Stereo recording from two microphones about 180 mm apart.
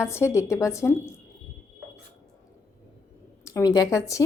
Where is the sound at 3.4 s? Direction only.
15° left (ahead or behind).